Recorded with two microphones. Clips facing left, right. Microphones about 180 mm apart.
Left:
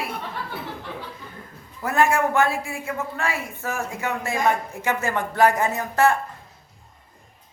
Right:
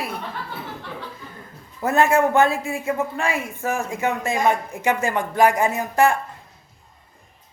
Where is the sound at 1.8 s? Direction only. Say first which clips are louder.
Right 3 dB; 25° right (ahead or behind).